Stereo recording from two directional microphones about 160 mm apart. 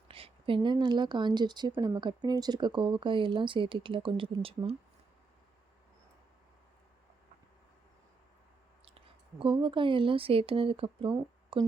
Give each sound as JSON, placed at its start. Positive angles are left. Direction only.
{"t": 0.1, "sound": "speech", "side_deg": -35}
{"t": 8.8, "sound": "speech", "side_deg": -35}